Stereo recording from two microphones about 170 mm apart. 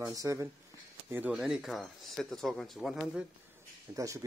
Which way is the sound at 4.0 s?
20° right (ahead or behind).